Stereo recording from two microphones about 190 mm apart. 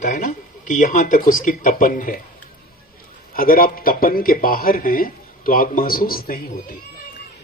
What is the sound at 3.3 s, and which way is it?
A man's voice, 50° left (ahead or behind).